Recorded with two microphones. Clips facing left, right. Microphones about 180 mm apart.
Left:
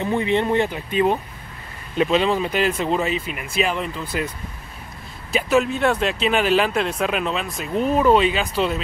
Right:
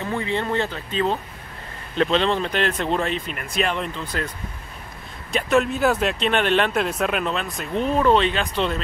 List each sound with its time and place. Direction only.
0.0 s speech: 20° left (ahead or behind)
5.3 s speech: centre (ahead or behind)